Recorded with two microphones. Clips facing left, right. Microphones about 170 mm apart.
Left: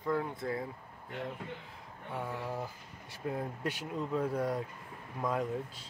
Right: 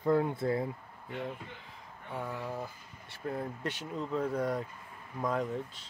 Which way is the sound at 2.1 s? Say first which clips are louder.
Even; 5° left (ahead or behind).